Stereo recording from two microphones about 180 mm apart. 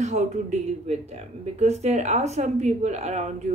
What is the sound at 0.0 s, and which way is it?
Speech, 40° right (ahead or behind).